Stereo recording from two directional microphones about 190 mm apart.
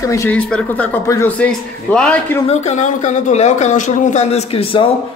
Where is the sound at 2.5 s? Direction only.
35° left (ahead or behind).